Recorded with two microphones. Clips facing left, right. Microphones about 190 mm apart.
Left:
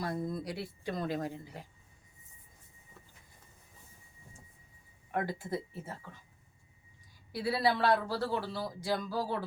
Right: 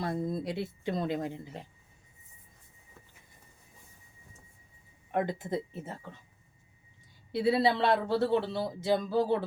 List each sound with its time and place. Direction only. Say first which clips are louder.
0.0 s speech: right 3 dB; 25° right (ahead or behind)
5.1 s speech: right 4 dB; 20° right (ahead or behind)
7.3 s speech: right 4 dB; 25° right (ahead or behind)